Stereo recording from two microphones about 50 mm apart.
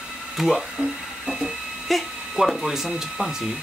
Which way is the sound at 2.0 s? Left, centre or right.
Centre.